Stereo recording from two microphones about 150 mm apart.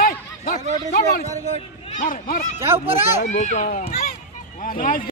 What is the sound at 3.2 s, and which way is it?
Speech, 50° left (ahead or behind).